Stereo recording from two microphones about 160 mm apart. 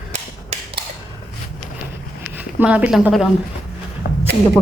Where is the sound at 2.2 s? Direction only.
10° right (ahead or behind).